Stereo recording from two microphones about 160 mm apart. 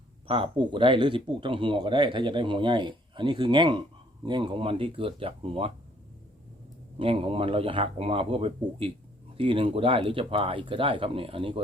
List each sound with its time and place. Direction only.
0.3 s speech: 35° right (ahead or behind)
7.0 s speech: 35° right (ahead or behind)